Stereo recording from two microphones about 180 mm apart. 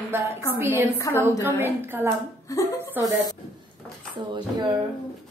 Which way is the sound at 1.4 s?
10° right (ahead or behind).